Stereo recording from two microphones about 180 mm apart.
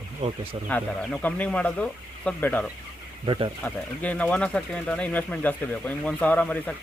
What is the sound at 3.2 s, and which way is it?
Speech, 25° right (ahead or behind).